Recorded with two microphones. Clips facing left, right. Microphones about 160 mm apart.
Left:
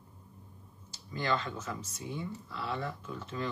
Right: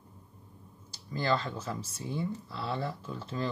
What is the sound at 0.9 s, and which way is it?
Speech, 35° right (ahead or behind).